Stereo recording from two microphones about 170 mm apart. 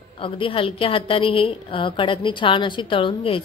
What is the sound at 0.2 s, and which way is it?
A woman's voice, 30° left (ahead or behind).